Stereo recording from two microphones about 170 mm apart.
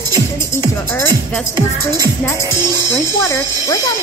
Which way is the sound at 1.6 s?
20° right (ahead or behind).